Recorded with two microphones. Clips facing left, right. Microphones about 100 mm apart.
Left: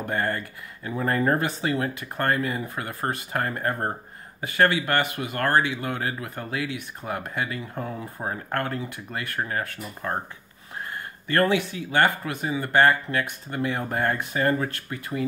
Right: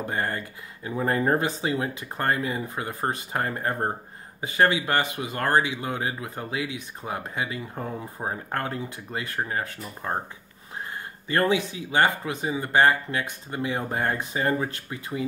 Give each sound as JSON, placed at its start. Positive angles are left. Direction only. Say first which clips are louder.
{"t": 0.0, "sound": "speech", "louder": "left 2 dB", "side_deg": -25}
{"t": 11.3, "sound": "speech", "louder": "left 1 dB", "side_deg": -20}